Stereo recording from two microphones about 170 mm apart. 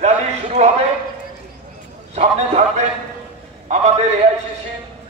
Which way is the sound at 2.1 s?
40° right (ahead or behind).